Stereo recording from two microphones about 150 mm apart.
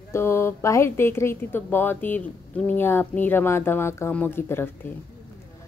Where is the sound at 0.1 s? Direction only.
15° left (ahead or behind).